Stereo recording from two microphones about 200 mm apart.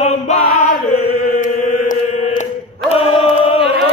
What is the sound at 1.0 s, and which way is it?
Chant, 40° left (ahead or behind).